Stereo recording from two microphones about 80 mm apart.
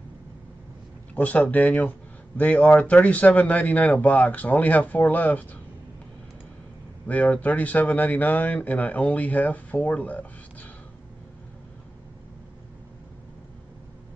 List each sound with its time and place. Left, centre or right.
1.1 s speech: centre
7.1 s speech: centre